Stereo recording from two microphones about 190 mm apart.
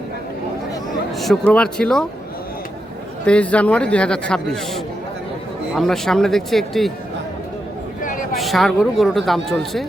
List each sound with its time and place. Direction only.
1.1 s a man's voice: centre (ahead or behind)
3.2 s a man's voice: 5° left (ahead or behind)
8.0 s a sound: 45° left (ahead or behind)
8.4 s a man's voice: centre (ahead or behind)